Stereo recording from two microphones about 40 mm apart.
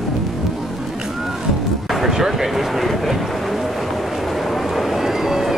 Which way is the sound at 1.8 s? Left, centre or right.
Centre.